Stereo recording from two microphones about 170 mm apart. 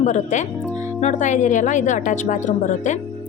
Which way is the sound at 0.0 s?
45° left (ahead or behind).